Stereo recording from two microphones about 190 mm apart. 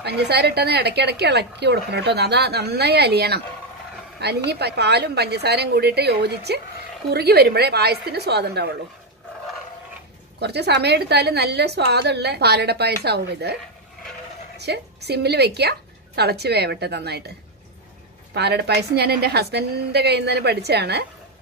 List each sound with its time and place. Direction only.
0.0 s a woman's voice: 60° right (ahead or behind)
10.4 s a woman's voice: 60° right (ahead or behind)
14.6 s a woman's voice: 60° right (ahead or behind)
18.3 s a woman's voice: 60° right (ahead or behind)